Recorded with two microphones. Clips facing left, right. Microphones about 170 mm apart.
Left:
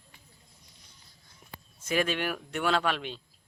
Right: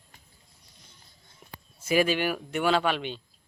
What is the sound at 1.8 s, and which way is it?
Speech, 10° right (ahead or behind).